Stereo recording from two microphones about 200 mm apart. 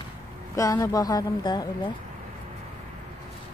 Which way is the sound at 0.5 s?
15° left (ahead or behind).